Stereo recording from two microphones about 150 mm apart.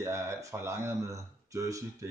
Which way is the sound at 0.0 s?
20° right (ahead or behind).